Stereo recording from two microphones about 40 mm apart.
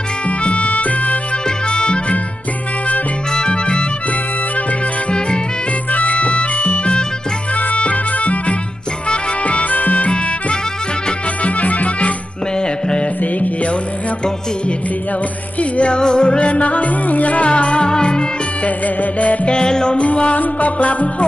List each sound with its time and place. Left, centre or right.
0.4 s music: left
1.7 s music: left
3.3 s music: left
5.9 s music: left
12.5 s music: left
13.2 s music: left
15.6 s music: left
17.5 s music: left
18.6 s music: left
19.5 s music: left
20.0 s music: left